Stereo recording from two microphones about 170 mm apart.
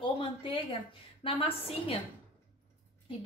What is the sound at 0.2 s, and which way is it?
A woman's voice, 30° left (ahead or behind).